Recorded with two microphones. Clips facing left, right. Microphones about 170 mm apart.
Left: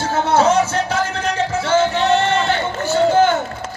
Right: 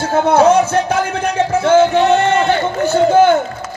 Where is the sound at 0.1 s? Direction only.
55° right (ahead or behind).